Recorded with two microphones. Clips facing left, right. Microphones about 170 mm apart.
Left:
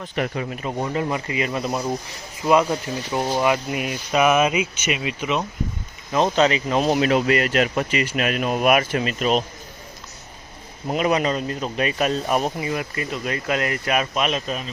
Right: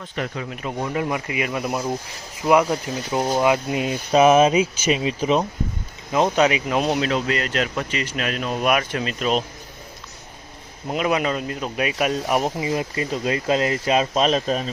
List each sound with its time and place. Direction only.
0.5 s speech: centre (ahead or behind)
0.9 s speech: 10° right (ahead or behind); by 5.5 s 35° right (ahead or behind)
6.1 s speech: 15° right (ahead or behind); by 9.4 s 5° left (ahead or behind)
10.8 s speech: centre (ahead or behind); by 14.7 s 35° right (ahead or behind)